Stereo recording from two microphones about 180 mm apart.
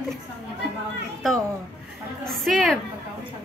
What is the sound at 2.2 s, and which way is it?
Speech, centre (ahead or behind).